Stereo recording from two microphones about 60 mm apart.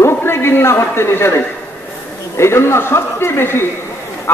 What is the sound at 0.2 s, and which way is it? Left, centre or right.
A man's voice, left.